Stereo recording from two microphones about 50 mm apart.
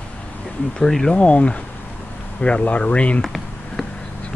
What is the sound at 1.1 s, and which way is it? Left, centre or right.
Speech, left.